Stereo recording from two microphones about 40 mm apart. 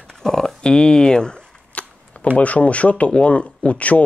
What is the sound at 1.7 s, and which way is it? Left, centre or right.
Shuffling cards, left.